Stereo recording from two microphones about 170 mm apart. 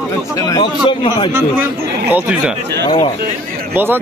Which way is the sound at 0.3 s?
20° left (ahead or behind).